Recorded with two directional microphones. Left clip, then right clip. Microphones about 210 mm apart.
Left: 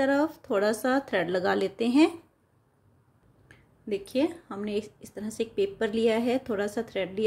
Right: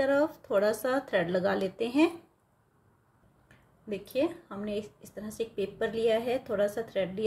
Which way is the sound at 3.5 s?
25° left (ahead or behind).